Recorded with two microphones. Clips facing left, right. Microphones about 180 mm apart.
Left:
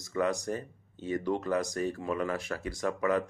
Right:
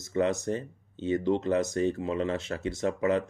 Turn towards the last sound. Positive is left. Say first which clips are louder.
# right 2 dB
turn(degrees=-25)  # may be behind; listen again after turning